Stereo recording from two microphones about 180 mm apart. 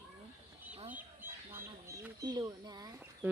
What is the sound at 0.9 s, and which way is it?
Bird, 10° right (ahead or behind).